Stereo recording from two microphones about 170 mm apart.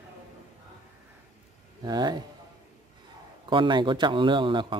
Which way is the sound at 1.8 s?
25° right (ahead or behind).